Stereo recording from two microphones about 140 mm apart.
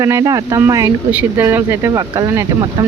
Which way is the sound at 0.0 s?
25° right (ahead or behind).